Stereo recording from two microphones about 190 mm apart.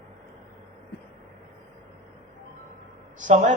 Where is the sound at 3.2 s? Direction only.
40° right (ahead or behind).